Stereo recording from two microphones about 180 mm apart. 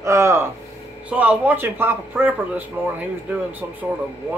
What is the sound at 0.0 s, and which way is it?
Speech, 15° right (ahead or behind).